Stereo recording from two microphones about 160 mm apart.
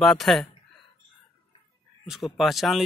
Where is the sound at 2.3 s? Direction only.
Centre (ahead or behind).